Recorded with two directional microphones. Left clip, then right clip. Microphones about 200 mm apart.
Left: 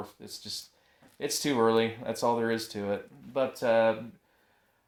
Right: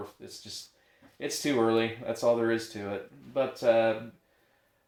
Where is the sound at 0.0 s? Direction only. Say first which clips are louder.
Left 1 dB; 35° left (ahead or behind).